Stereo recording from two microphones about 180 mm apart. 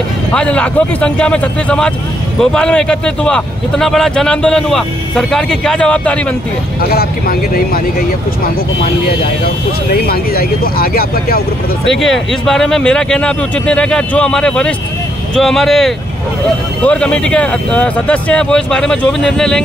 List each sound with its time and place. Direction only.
0.3 s speech: 5° left (ahead or behind)
6.8 s speech: 55° left (ahead or behind)
10.0 s speech: 55° left (ahead or behind)
11.9 s speech: centre (ahead or behind)